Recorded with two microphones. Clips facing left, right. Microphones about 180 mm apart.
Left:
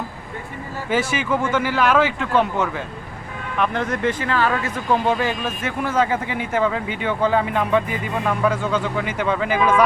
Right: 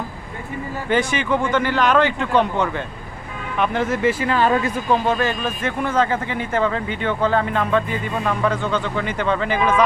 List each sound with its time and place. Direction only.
0.9 s speech: 5° left (ahead or behind)
4.3 s speech: 20° right (ahead or behind)
4.9 s speech: 10° left (ahead or behind)